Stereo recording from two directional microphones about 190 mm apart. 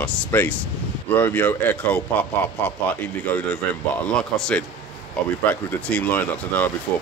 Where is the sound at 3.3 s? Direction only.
10° left (ahead or behind).